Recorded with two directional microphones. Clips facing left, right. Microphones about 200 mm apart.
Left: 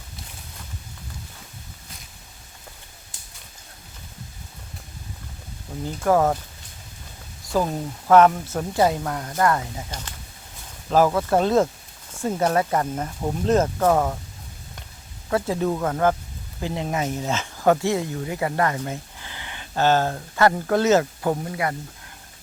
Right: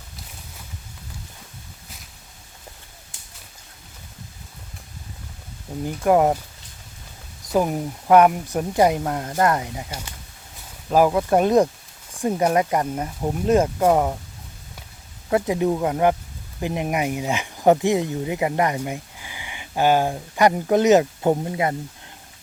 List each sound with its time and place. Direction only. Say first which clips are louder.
5.8 s speech: right 2 dB; 15° right (ahead or behind)
7.4 s speech: right 2 dB; 15° right (ahead or behind)
15.3 s speech: right 3 dB; 20° right (ahead or behind)